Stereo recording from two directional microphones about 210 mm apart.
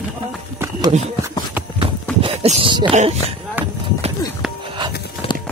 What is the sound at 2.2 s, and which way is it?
Speech, 25° right (ahead or behind).